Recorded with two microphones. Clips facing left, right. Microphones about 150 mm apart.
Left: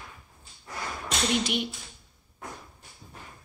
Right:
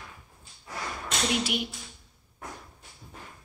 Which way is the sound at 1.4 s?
5° right (ahead or behind).